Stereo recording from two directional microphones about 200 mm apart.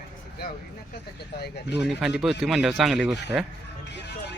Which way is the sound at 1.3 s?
55° left (ahead or behind).